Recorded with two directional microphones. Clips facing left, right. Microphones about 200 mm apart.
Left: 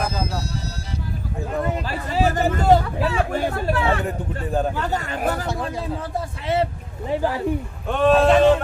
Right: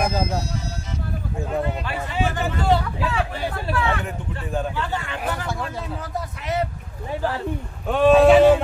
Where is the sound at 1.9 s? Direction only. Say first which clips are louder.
Left 3 dB; 40° left (ahead or behind).